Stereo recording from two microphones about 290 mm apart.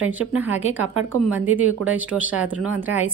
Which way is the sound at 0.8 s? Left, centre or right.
Right.